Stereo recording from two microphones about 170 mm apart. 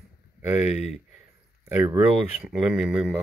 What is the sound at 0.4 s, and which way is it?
Speech, 10° right (ahead or behind).